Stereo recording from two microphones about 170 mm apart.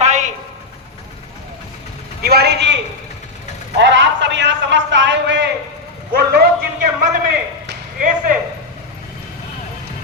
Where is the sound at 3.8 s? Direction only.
90° right.